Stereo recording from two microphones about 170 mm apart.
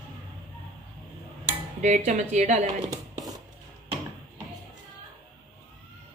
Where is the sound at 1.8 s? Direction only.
45° right (ahead or behind).